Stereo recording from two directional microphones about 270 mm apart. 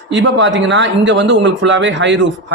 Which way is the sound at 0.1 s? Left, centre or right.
Right.